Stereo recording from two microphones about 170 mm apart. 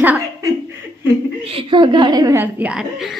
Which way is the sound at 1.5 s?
30° right (ahead or behind).